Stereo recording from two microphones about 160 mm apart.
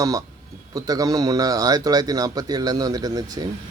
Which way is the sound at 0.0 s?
20° right (ahead or behind).